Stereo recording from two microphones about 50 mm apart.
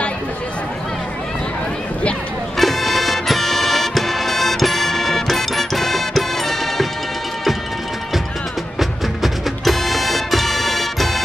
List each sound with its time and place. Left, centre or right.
2.5 s music: centre
8.7 s music: centre